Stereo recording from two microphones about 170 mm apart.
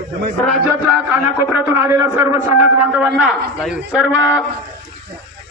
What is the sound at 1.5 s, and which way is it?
Speech, 15° right (ahead or behind).